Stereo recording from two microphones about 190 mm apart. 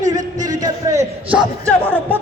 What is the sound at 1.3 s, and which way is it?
Crowd, 5° right (ahead or behind).